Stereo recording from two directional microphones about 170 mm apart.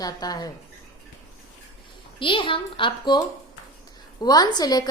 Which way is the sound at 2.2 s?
30° left (ahead or behind).